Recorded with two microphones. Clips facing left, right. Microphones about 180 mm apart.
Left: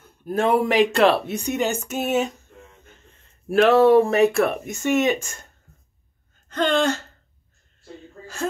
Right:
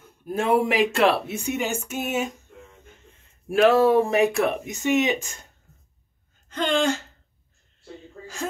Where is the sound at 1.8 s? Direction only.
40° left (ahead or behind).